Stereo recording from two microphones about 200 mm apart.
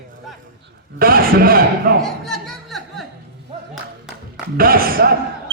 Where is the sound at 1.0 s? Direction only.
45° right (ahead or behind).